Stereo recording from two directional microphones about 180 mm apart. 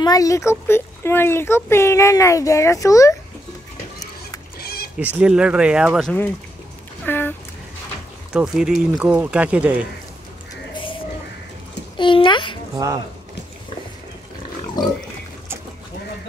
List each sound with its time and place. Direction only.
0.0 s speech: 20° left (ahead or behind)
4.6 s bleat: 60° left (ahead or behind)
4.9 s speech: 5° right (ahead or behind)
7.1 s a sound: 10° left (ahead or behind)
8.3 s speech: 5° right (ahead or behind)
10.7 s music: 30° left (ahead or behind)
12.0 s a child's voice: 25° left (ahead or behind)
12.7 s speech: 20° right (ahead or behind)
14.8 s a child's voice: 20° left (ahead or behind)